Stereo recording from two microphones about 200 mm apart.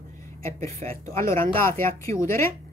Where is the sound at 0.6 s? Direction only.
15° left (ahead or behind).